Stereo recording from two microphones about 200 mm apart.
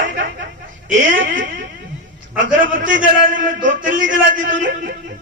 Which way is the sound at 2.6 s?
40° right (ahead or behind).